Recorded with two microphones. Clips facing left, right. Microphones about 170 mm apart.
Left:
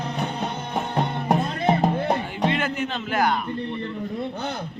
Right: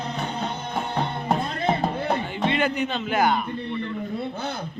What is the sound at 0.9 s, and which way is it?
Music, 15° left (ahead or behind).